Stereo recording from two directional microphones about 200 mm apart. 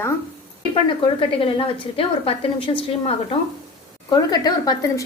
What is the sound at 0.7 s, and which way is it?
A woman's voice, 25° left (ahead or behind).